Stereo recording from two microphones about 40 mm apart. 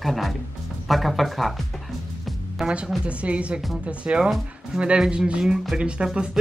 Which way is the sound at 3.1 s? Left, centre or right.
Right.